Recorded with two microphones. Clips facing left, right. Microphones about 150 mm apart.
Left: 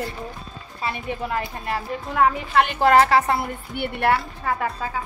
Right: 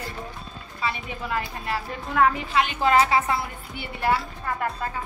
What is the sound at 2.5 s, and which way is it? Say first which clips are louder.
A woman's voice: left 5 dB; 65° left (ahead or behind).